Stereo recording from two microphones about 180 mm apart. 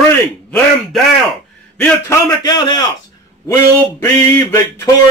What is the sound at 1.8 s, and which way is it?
A man's voice, 20° left (ahead or behind).